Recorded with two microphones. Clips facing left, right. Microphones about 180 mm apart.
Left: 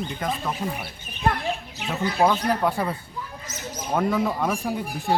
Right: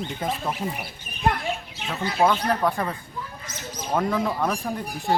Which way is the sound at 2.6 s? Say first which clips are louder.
Left 1 dB; 10° left (ahead or behind).